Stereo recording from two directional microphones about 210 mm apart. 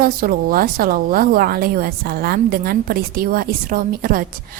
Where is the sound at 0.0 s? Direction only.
45° right (ahead or behind).